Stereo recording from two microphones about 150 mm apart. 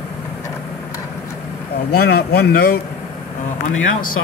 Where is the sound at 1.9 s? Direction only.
90° left.